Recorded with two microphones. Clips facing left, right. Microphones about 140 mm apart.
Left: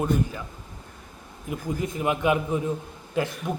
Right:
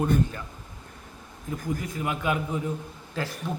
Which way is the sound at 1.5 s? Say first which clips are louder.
Left 2 dB; 20° left (ahead or behind).